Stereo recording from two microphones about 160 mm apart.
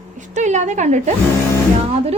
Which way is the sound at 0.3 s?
50° right (ahead or behind).